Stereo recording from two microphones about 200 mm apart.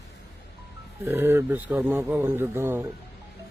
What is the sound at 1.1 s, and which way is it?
Speech, 10° right (ahead or behind).